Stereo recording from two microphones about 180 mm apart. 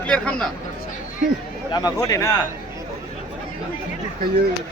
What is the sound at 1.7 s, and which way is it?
Speech, 20° left (ahead or behind).